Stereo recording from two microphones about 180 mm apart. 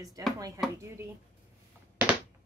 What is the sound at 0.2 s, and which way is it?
Speech, 20° right (ahead or behind).